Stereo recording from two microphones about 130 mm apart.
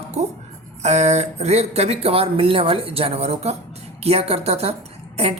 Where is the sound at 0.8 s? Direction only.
60° right (ahead or behind).